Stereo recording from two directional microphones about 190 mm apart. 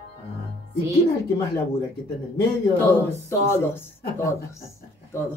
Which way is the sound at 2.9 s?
15° left (ahead or behind).